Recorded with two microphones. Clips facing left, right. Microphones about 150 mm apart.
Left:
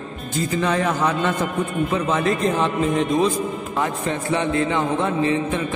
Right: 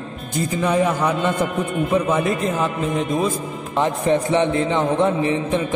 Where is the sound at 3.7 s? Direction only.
20° right (ahead or behind).